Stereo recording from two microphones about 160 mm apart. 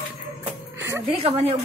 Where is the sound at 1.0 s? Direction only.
40° right (ahead or behind).